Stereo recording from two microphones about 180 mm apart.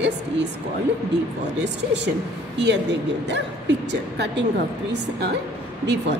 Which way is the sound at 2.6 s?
75° right (ahead or behind).